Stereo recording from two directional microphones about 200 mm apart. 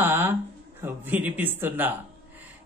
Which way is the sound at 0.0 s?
10° right (ahead or behind).